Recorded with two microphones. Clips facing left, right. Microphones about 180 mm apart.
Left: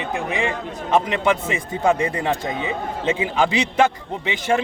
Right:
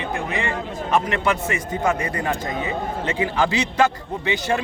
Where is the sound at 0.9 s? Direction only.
20° left (ahead or behind).